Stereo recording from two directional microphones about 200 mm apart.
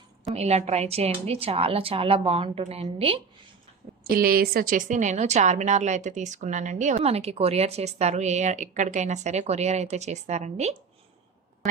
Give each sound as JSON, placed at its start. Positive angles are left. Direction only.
{"t": 0.3, "sound": "speech", "side_deg": -30}
{"t": 4.1, "sound": "speech", "side_deg": -45}